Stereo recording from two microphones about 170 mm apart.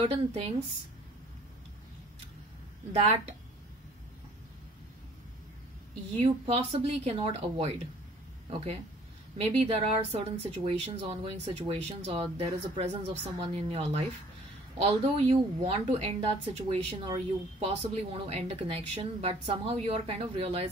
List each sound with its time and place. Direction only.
0.0 s speech: 35° right (ahead or behind)
2.9 s speech: 40° right (ahead or behind)
6.1 s speech: 40° right (ahead or behind)